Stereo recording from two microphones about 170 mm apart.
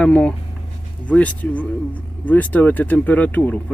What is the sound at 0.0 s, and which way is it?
Speech, 5° left (ahead or behind).